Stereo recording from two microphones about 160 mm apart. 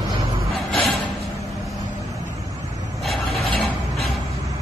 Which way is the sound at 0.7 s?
Centre (ahead or behind).